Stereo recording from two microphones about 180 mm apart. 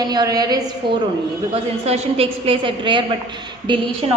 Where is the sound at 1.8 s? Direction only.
35° right (ahead or behind).